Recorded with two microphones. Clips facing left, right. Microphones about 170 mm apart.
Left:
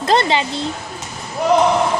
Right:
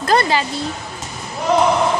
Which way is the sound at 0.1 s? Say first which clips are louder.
Even; 25° left (ahead or behind).